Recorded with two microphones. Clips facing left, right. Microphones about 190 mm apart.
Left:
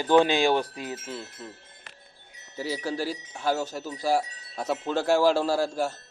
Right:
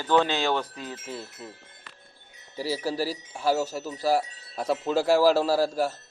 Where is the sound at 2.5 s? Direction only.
5° right (ahead or behind).